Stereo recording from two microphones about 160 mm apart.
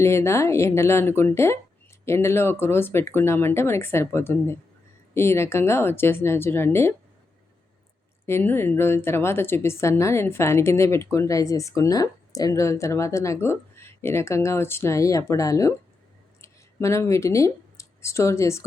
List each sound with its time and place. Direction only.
0.0 s a woman's voice: 15° left (ahead or behind)
8.3 s a woman's voice: 15° left (ahead or behind)